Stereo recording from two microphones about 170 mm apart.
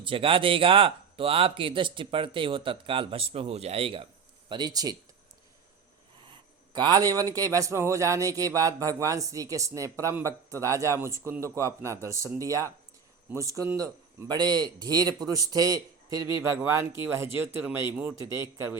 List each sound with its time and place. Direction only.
0.0 s speech: 30° right (ahead or behind)
6.7 s a man's voice: 25° right (ahead or behind)